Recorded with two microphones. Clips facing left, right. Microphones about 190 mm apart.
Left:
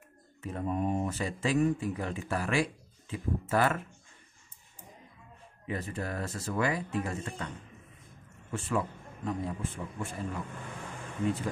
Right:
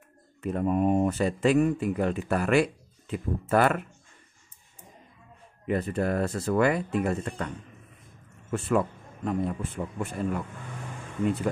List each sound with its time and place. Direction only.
0.4 s speech: 65° right (ahead or behind)
5.7 s speech: 60° right (ahead or behind)
8.5 s speech: 60° right (ahead or behind)